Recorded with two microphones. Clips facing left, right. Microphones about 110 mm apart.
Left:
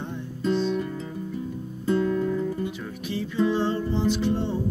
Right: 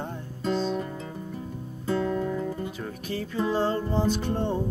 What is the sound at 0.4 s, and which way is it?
Guitar, 40° right (ahead or behind).